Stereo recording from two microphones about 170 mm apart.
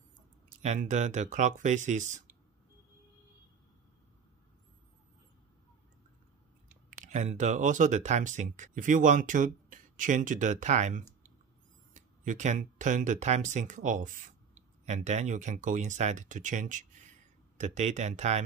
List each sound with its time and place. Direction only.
0.6 s speech: 45° right (ahead or behind)
6.9 s speech: 50° right (ahead or behind)